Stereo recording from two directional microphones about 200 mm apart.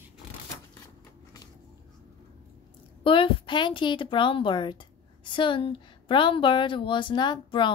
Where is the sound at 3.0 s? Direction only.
25° left (ahead or behind).